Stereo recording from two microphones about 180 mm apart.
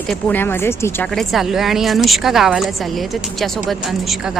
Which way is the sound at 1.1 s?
Centre (ahead or behind).